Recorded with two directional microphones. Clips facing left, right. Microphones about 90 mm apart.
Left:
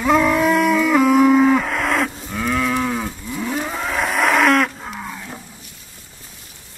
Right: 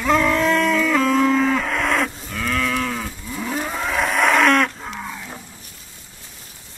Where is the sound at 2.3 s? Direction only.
10° left (ahead or behind).